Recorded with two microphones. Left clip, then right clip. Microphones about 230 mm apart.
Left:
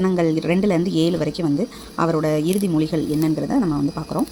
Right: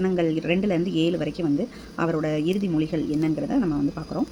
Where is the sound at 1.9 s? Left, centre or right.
Centre.